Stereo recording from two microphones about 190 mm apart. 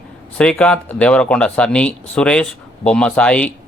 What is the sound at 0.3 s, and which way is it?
Speech, 5° left (ahead or behind).